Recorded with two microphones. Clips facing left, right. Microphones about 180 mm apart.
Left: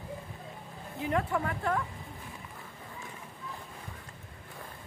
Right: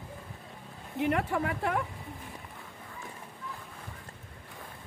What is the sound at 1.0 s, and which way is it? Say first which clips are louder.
Speech: right 2 dB; 75° right (ahead or behind).